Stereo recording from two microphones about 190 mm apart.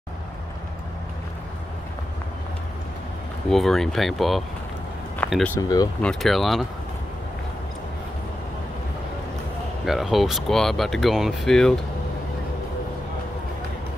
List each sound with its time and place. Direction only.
3.4 s speech: centre (ahead or behind)
5.6 s speech: 20° left (ahead or behind)
6.0 s speech: centre (ahead or behind)
9.8 s speech: centre (ahead or behind)